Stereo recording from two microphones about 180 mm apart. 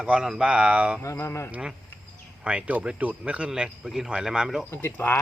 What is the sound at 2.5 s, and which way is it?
Speech, 5° right (ahead or behind).